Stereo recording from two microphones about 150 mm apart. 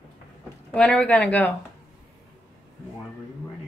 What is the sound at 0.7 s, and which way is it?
Speech, 5° left (ahead or behind).